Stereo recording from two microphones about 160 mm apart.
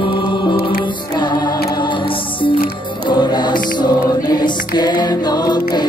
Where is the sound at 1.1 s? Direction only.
25° left (ahead or behind).